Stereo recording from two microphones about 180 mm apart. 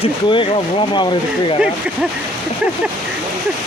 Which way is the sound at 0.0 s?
30° left (ahead or behind).